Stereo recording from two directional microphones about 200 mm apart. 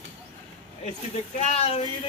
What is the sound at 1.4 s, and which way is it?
Speech, 30° left (ahead or behind).